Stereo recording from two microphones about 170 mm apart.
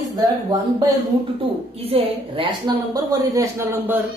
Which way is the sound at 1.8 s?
35° right (ahead or behind).